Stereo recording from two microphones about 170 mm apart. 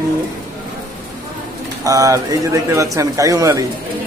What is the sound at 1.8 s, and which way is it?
Speech, 20° right (ahead or behind).